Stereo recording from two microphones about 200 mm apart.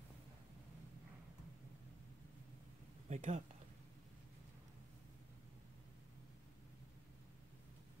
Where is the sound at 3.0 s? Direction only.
35° right (ahead or behind).